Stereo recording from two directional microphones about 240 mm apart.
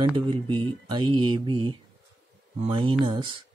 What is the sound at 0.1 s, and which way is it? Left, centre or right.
Speech, centre.